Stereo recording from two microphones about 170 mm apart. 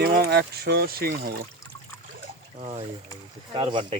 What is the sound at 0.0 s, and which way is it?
Speech, 65° right (ahead or behind).